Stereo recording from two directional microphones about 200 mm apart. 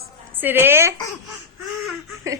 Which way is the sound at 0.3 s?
10° right (ahead or behind).